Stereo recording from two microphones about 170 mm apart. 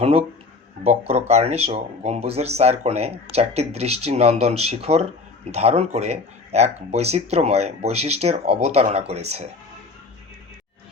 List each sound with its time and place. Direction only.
0.0 s speech: 35° right (ahead or behind)